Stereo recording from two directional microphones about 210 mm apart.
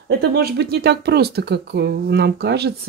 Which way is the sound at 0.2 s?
50° right (ahead or behind).